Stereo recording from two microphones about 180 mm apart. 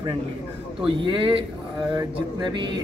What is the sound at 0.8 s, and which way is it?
Speech, 25° right (ahead or behind).